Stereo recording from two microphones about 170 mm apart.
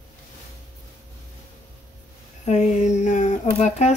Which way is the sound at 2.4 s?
45° left (ahead or behind).